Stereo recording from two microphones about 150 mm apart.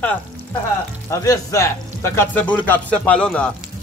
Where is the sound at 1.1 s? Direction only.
20° left (ahead or behind).